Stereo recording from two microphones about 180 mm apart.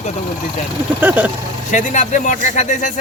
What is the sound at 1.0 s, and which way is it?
Speech, 10° right (ahead or behind).